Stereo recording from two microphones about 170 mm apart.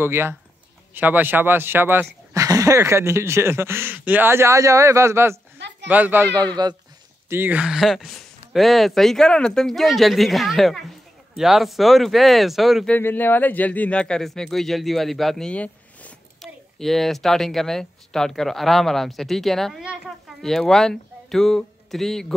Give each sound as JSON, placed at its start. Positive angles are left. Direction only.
{"t": 0.0, "sound": "speech", "side_deg": -15}
{"t": 6.3, "sound": "speech", "side_deg": -25}
{"t": 7.2, "sound": "speech", "side_deg": -10}
{"t": 12.9, "sound": "speech", "side_deg": 10}